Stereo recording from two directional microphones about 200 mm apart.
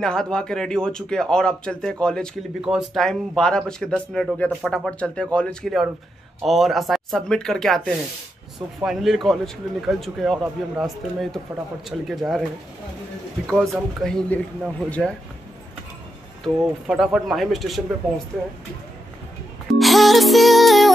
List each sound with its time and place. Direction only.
0.0 s a man's voice: 5° left (ahead or behind)
13.5 s a man's voice: 5° left (ahead or behind)
16.6 s a man's voice: centre (ahead or behind)
19.7 s music: centre (ahead or behind)